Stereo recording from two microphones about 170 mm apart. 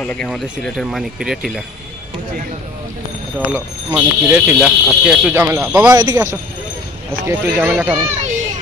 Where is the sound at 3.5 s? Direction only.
15° right (ahead or behind).